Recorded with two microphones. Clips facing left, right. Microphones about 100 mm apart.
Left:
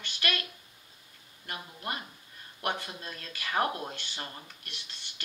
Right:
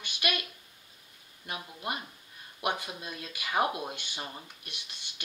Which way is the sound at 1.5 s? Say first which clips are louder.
Right 1 dB; 15° right (ahead or behind).